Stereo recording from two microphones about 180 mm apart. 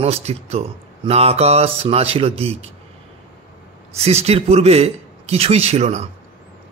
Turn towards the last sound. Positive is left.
turn(degrees=-35)  # may be behind; listen again after turning